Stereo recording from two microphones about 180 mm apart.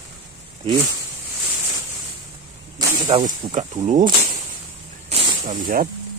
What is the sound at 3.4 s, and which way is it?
Speech, 35° right (ahead or behind).